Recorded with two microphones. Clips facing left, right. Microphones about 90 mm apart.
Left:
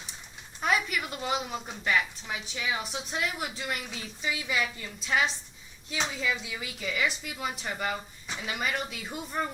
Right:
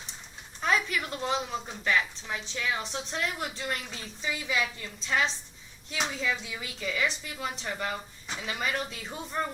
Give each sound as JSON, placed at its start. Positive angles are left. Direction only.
{"t": 0.6, "sound": "a woman's voice", "side_deg": 10}
{"t": 6.6, "sound": "speech", "side_deg": -40}
{"t": 7.0, "sound": "a woman's voice", "side_deg": 10}